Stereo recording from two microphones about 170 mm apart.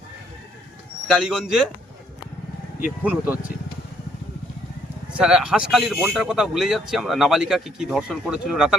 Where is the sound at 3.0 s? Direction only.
10° right (ahead or behind).